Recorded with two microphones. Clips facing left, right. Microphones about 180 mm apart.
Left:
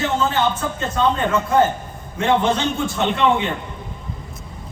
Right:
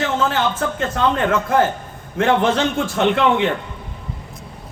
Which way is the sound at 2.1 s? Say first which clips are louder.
Right 2 dB; 90° right.